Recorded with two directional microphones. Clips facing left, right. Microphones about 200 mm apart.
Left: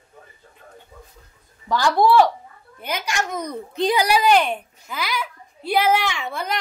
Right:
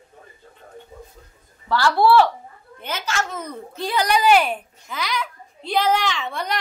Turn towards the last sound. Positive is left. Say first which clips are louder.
# even
turn(degrees=5)  # may be behind; listen again after turning